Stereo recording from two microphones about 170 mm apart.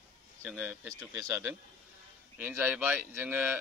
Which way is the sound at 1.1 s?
15° right (ahead or behind).